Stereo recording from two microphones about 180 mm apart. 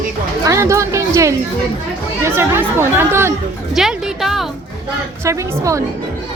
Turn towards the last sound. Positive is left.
turn(degrees=-15)  # may be behind; listen again after turning